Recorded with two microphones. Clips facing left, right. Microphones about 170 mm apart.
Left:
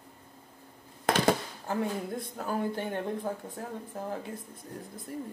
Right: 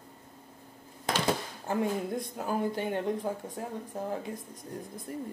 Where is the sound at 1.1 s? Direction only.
55° left (ahead or behind).